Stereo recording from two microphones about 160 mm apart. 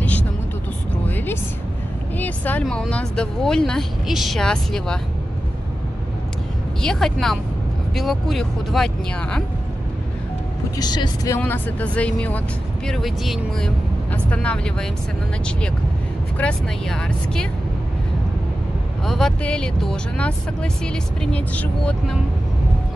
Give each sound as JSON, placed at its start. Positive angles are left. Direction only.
{"t": 1.0, "sound": "a sound", "side_deg": 10}
{"t": 2.1, "sound": "speech", "side_deg": 10}
{"t": 6.8, "sound": "speech", "side_deg": 5}
{"t": 10.8, "sound": "speech", "side_deg": 25}
{"t": 11.3, "sound": "speech", "side_deg": 10}
{"t": 16.3, "sound": "speech", "side_deg": 5}
{"t": 19.0, "sound": "speech", "side_deg": 5}